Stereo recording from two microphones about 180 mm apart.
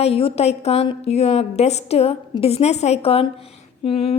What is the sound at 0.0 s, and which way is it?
A woman's voice, 30° left (ahead or behind).